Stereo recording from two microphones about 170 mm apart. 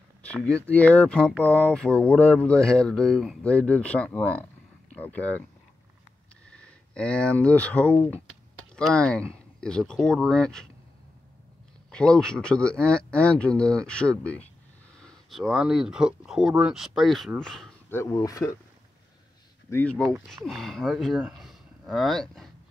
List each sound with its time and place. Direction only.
0.7 s speech: 10° left (ahead or behind)
6.5 s speech: 5° left (ahead or behind)
11.9 s speech: 5° left (ahead or behind)
17.9 s speech: 20° left (ahead or behind)
19.7 s speech: 10° left (ahead or behind)